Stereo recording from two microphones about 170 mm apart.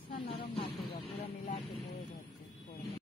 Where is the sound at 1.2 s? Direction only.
40° left (ahead or behind).